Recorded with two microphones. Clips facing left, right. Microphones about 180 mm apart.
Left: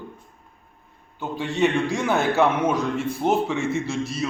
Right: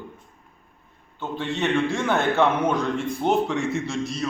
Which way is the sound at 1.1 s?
10° left (ahead or behind).